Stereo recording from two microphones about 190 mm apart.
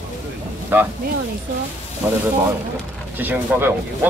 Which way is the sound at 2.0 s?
5° right (ahead or behind).